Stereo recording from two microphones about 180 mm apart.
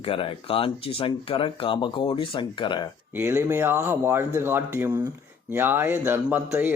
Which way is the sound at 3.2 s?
15° right (ahead or behind).